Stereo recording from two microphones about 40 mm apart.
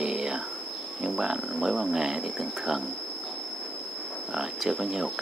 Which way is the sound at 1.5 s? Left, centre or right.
Centre.